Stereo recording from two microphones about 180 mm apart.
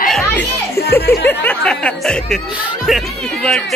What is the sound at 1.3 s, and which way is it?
Speech, 10° left (ahead or behind).